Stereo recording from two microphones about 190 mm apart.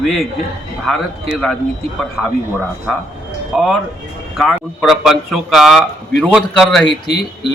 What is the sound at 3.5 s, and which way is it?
A man's voice, centre (ahead or behind).